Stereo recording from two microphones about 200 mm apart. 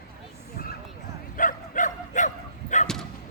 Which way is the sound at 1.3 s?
40° left (ahead or behind).